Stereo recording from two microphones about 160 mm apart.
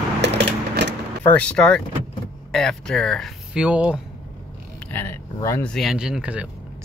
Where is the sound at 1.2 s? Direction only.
10° left (ahead or behind).